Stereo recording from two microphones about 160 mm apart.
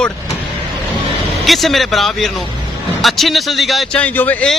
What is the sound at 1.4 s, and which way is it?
Speech, centre (ahead or behind).